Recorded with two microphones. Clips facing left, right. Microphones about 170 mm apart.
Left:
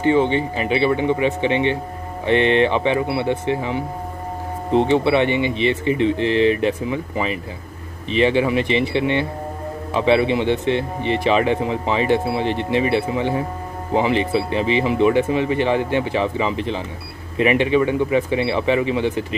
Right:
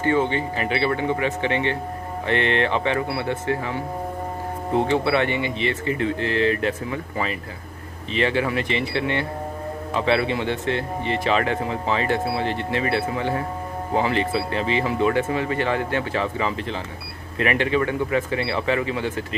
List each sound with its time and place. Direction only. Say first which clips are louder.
0.0 s speech: left 4 dB; 20° left (ahead or behind)